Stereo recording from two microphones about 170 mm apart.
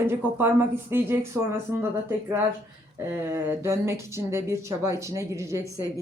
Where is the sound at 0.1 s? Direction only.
15° right (ahead or behind).